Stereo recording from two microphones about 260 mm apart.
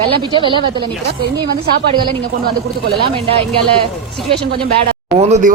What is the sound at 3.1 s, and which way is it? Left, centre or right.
Speech, right.